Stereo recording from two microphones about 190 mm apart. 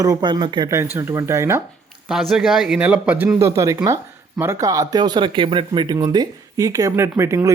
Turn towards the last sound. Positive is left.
turn(degrees=-15)  # may be behind; listen again after turning